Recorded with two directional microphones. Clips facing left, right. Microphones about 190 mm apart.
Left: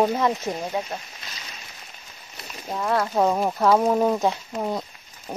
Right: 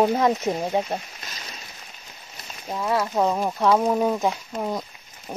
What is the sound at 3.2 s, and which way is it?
Speech, 5° left (ahead or behind).